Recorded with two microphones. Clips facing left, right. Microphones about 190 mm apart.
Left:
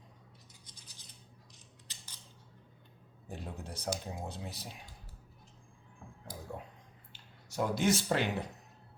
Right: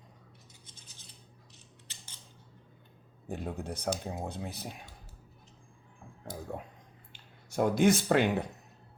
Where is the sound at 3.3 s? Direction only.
55° right (ahead or behind).